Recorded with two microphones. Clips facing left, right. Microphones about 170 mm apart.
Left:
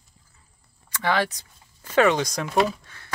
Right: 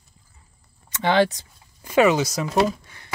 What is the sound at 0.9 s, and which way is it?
Speech, 25° right (ahead or behind).